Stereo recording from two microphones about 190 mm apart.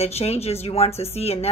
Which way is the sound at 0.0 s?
35° left (ahead or behind).